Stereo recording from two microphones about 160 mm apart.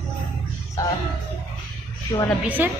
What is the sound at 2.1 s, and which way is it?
Speech, 25° left (ahead or behind).